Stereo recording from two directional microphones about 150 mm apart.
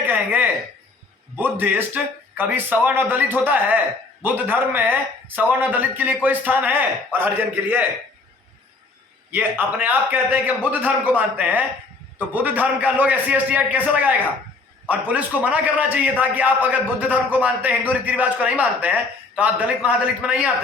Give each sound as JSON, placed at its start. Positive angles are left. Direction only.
{"t": 0.1, "sound": "a sound", "side_deg": -10}
{"t": 1.4, "sound": "a man's voice", "side_deg": -15}
{"t": 9.3, "sound": "a man's voice", "side_deg": -10}